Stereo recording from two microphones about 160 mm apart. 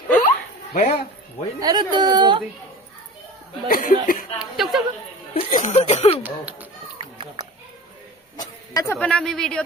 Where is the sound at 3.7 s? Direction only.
60° left (ahead or behind).